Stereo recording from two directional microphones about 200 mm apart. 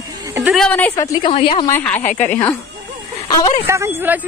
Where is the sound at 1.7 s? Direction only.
10° left (ahead or behind).